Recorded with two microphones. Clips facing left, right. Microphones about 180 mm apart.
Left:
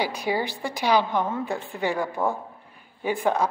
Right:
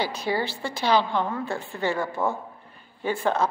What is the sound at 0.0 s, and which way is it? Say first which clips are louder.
A woman's voice: left 1 dB; 15° left (ahead or behind).